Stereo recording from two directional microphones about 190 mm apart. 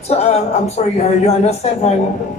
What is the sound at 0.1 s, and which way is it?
A woman's voice, 35° left (ahead or behind).